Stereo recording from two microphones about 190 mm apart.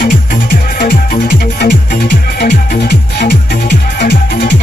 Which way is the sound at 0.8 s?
60° left (ahead or behind).